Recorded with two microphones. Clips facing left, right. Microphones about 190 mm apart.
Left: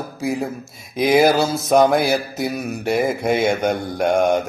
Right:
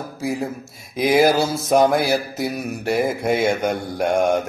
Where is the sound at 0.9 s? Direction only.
Centre (ahead or behind).